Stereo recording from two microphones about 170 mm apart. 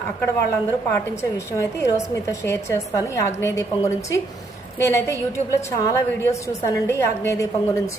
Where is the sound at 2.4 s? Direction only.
15° left (ahead or behind).